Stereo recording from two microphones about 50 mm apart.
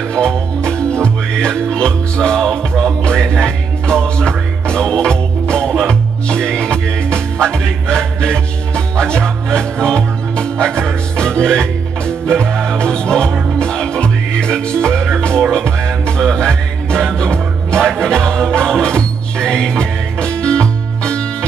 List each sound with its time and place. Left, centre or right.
0.1 s music: centre